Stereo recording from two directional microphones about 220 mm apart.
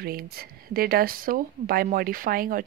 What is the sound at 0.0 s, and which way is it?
Speech, 45° right (ahead or behind).